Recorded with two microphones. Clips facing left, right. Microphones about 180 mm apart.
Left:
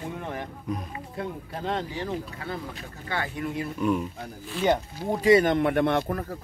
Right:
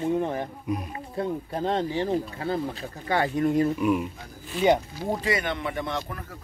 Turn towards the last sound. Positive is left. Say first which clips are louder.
# left 7 dB
turn(degrees=60)  # may be behind; listen again after turning